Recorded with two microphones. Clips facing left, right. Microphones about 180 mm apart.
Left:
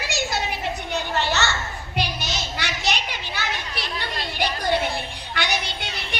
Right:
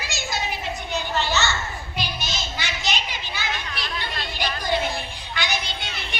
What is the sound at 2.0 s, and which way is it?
Children playing, 65° left (ahead or behind).